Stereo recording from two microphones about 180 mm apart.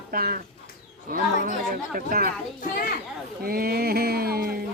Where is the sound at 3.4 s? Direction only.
55° right (ahead or behind).